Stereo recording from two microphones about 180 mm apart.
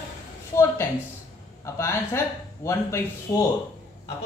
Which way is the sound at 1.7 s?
15° left (ahead or behind).